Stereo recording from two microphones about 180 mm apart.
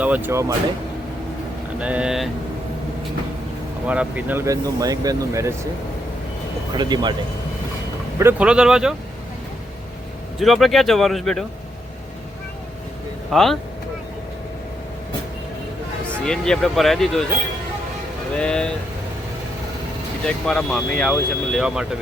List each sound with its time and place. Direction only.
0.0 s speech: 10° right (ahead or behind)
1.8 s speech: 5° right (ahead or behind)
3.8 s speech: 10° right (ahead or behind)
6.7 s speech: 25° right (ahead or behind)
8.2 s speech: 10° right (ahead or behind)
10.4 s speech: centre (ahead or behind)
13.3 s speech: centre (ahead or behind)
16.2 s speech: 5° left (ahead or behind)
18.3 s speech: 5° left (ahead or behind)
20.2 s speech: 5° left (ahead or behind)